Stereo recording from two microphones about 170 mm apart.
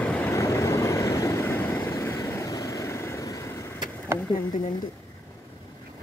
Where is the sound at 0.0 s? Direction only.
10° left (ahead or behind).